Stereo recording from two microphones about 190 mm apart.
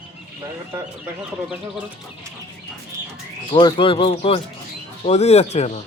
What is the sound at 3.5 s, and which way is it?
Speech, 25° left (ahead or behind).